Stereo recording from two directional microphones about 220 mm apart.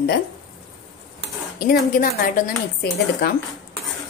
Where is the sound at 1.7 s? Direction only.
40° left (ahead or behind).